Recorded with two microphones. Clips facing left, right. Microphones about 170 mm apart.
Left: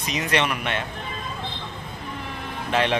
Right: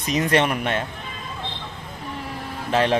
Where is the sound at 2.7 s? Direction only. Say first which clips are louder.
Right 3 dB; 40° right (ahead or behind).